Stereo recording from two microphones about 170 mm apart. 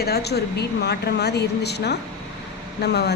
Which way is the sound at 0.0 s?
70° left (ahead or behind).